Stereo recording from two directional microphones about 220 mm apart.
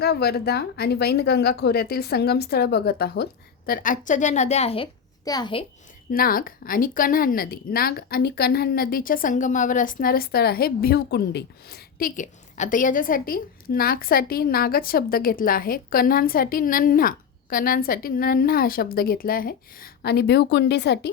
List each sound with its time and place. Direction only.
0.0 s a woman's voice: 45° left (ahead or behind); by 5.6 s 20° left (ahead or behind)
6.1 s a woman's voice: 40° left (ahead or behind)